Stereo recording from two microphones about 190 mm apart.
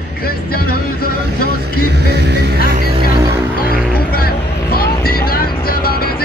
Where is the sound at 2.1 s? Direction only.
60° right (ahead or behind).